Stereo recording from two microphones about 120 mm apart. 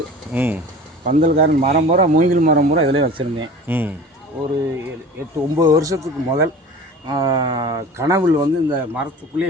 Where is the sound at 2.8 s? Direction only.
50° right (ahead or behind).